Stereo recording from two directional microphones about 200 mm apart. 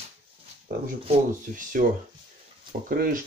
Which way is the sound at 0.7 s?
45° right (ahead or behind).